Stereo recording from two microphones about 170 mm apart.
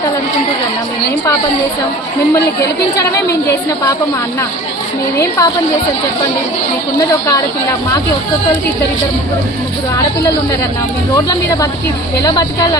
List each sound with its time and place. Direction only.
5.1 s a woman's voice: 15° left (ahead or behind)
12.2 s speech: 25° left (ahead or behind)